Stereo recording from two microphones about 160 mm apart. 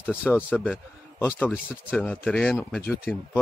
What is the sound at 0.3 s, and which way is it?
Speech, 5° left (ahead or behind).